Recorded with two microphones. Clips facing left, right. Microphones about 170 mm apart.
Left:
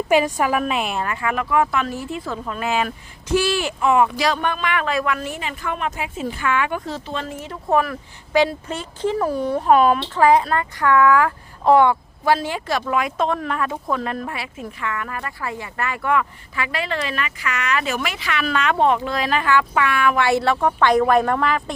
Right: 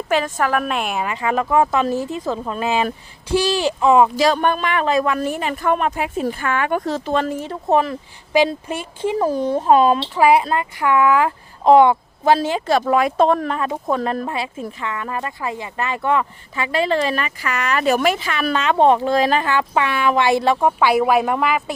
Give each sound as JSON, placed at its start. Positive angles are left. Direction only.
{"t": 0.1, "sound": "a woman's voice", "side_deg": 15}
{"t": 0.6, "sound": "a woman's voice", "side_deg": 0}
{"t": 1.0, "sound": "speech", "side_deg": -20}
{"t": 3.4, "sound": "speech", "side_deg": -40}
{"t": 3.8, "sound": "speech", "side_deg": -25}
{"t": 4.3, "sound": "speech", "side_deg": -45}
{"t": 4.9, "sound": "a woman's voice", "side_deg": -25}
{"t": 6.8, "sound": "speech", "side_deg": -65}
{"t": 7.4, "sound": "speech", "side_deg": -25}
{"t": 10.2, "sound": "speech", "side_deg": -10}
{"t": 13.6, "sound": "speech", "side_deg": -25}